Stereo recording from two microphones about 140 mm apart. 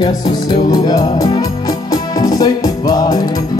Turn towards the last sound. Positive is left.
turn(degrees=25)  # may be behind; listen again after turning